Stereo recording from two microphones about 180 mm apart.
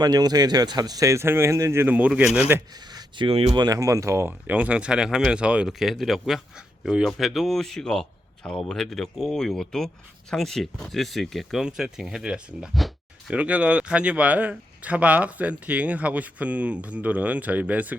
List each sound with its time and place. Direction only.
0.0 s speech: 20° right (ahead or behind); by 2.4 s 5° right (ahead or behind)
2.7 s speech: 20° right (ahead or behind)